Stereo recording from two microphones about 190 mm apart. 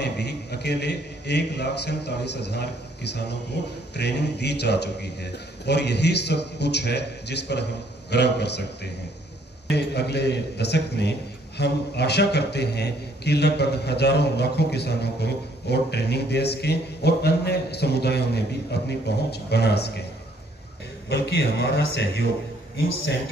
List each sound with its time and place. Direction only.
0.0 s a man's voice: 60° left (ahead or behind)
21.1 s a man's voice: 60° left (ahead or behind)